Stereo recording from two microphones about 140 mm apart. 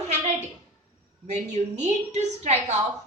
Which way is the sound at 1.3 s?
55° right (ahead or behind).